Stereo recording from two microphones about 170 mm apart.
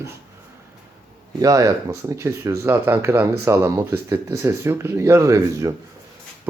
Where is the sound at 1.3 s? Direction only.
20° right (ahead or behind).